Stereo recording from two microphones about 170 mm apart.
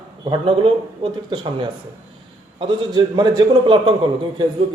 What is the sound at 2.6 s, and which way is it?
A man's voice, 25° right (ahead or behind).